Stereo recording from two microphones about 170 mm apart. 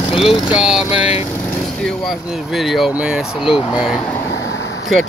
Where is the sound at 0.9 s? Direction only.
35° left (ahead or behind).